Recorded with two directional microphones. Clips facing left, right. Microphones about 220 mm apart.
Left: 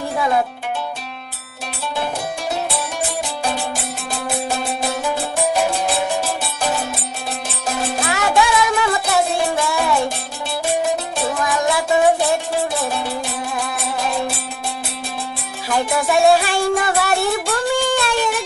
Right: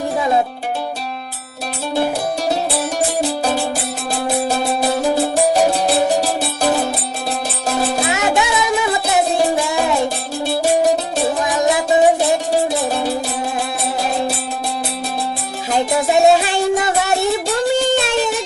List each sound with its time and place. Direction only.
2.5 s music: 35° right (ahead or behind)
8.1 s music: 20° right (ahead or behind)
15.7 s music: 25° right (ahead or behind)